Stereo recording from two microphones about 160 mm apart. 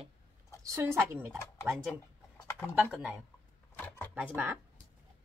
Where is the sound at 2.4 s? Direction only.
15° left (ahead or behind).